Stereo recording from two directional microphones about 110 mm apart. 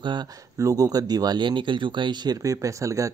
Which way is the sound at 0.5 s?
30° right (ahead or behind).